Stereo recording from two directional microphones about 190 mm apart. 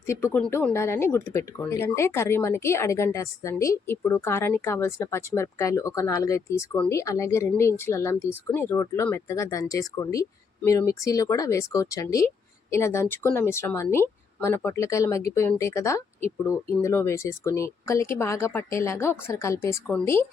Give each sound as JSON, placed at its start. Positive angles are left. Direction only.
{"t": 0.0, "sound": "speech", "side_deg": 15}